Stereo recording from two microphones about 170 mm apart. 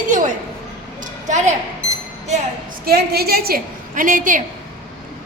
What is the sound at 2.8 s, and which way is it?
A woman's voice, 65° right (ahead or behind).